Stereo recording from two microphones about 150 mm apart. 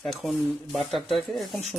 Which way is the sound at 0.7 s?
Centre (ahead or behind).